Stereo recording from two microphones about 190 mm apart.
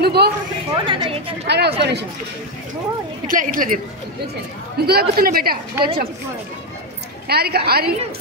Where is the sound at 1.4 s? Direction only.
60° right (ahead or behind).